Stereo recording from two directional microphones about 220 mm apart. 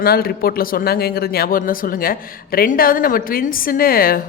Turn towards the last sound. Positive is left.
turn(degrees=40)  # may be behind; listen again after turning